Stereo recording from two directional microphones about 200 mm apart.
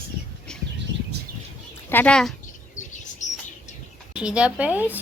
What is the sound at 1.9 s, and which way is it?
Speech, 5° left (ahead or behind).